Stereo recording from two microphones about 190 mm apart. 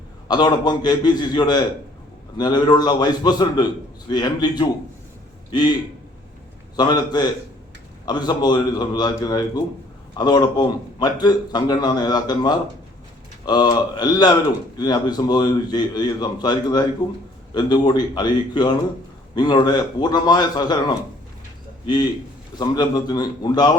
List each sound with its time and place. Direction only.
0.3 s a man's voice: 20° left (ahead or behind)
6.7 s a man's voice: 20° left (ahead or behind)